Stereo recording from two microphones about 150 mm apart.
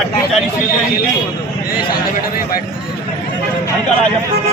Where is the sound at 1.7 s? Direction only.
75° left (ahead or behind).